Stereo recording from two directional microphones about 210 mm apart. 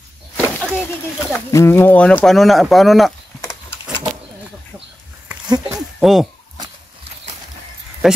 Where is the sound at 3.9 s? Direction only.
15° right (ahead or behind).